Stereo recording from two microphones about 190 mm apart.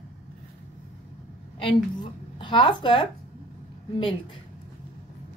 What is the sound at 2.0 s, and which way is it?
A woman's voice, 25° left (ahead or behind).